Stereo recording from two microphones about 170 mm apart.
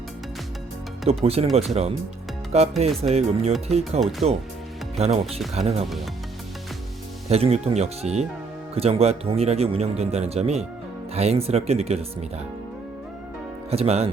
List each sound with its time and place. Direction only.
1.2 s speech: 35° right (ahead or behind)
2.5 s speech: 40° right (ahead or behind)
7.3 s speech: 35° right (ahead or behind)
13.7 s speech: 35° right (ahead or behind)